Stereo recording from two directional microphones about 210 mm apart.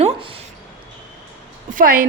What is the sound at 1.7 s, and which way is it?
Speech, 40° right (ahead or behind).